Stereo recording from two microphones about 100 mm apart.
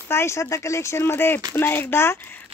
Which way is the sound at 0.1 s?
25° left (ahead or behind).